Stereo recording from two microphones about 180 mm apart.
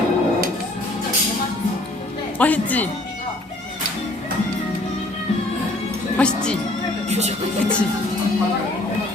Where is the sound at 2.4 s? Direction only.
10° left (ahead or behind).